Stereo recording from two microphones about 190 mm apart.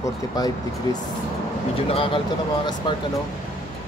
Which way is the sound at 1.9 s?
30° left (ahead or behind).